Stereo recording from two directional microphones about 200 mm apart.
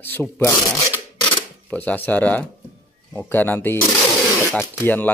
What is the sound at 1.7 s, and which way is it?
Speech, 10° left (ahead or behind).